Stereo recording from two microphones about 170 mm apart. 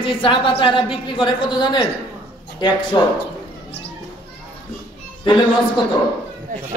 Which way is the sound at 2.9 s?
25° left (ahead or behind).